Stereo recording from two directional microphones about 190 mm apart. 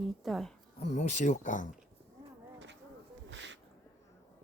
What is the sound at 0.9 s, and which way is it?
Speech, 40° left (ahead or behind).